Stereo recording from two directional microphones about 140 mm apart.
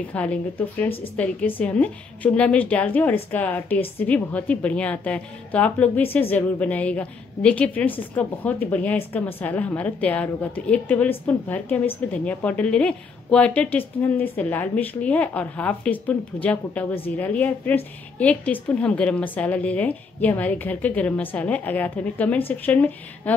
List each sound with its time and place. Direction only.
0.1 s a woman's voice: 10° left (ahead or behind)